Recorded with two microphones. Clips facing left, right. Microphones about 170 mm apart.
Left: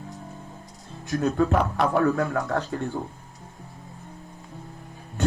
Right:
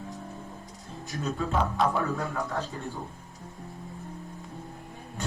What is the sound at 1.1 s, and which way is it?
Speech, 75° left (ahead or behind).